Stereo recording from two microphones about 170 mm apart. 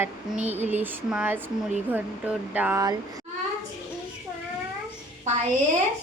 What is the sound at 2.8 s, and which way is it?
Speech, 20° right (ahead or behind).